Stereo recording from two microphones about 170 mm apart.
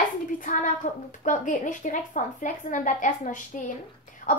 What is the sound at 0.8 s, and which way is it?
A woman's voice, 45° left (ahead or behind).